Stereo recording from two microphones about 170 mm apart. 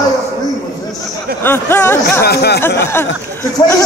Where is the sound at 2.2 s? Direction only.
70° left (ahead or behind).